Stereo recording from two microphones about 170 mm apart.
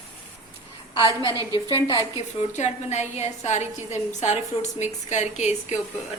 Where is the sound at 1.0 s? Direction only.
30° left (ahead or behind).